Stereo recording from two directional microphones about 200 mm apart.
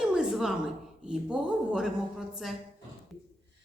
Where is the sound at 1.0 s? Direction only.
5° right (ahead or behind).